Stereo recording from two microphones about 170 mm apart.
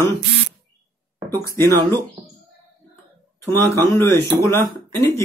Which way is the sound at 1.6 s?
15° left (ahead or behind).